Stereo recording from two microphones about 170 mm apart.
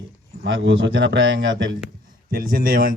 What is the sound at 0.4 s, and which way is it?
A man's voice, 90° right.